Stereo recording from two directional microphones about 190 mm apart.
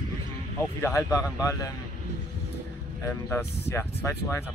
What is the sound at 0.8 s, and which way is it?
Speech, 15° left (ahead or behind).